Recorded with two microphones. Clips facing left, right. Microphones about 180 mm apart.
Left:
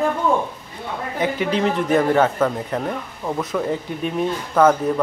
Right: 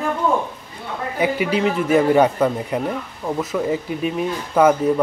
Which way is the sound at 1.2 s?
10° right (ahead or behind).